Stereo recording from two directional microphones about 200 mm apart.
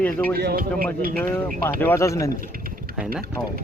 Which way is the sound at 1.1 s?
10° left (ahead or behind).